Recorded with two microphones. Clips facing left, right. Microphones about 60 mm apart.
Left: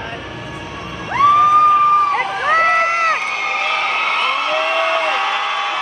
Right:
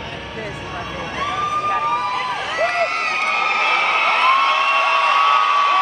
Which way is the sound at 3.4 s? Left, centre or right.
Right.